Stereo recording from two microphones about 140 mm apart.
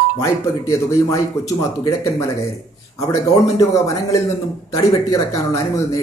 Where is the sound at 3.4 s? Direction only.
25° left (ahead or behind).